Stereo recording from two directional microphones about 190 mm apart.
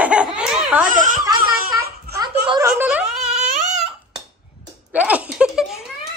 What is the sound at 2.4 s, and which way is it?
Speech, 20° right (ahead or behind).